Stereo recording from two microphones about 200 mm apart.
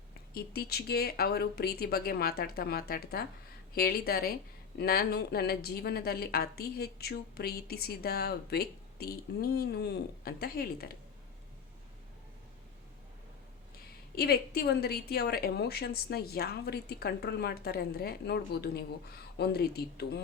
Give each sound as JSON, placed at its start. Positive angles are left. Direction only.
{"t": 0.3, "sound": "speech", "side_deg": 50}
{"t": 14.2, "sound": "speech", "side_deg": 50}